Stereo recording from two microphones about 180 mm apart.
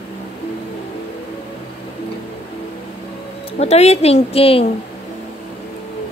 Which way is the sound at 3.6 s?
35° left (ahead or behind).